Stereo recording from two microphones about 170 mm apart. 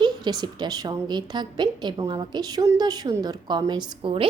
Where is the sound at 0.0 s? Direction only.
25° right (ahead or behind).